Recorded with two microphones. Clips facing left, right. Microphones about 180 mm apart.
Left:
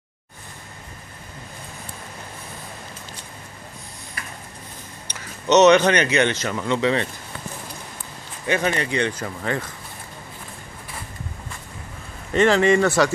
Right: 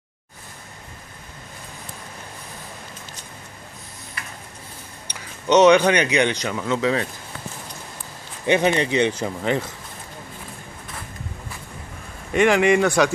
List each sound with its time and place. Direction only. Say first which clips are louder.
5.0 s speech: even; 10° right (ahead or behind)
6.6 s speech: left 1 dB; centre (ahead or behind)
8.5 s speech: right 4 dB; 20° right (ahead or behind)
12.3 s speech: even; 15° right (ahead or behind)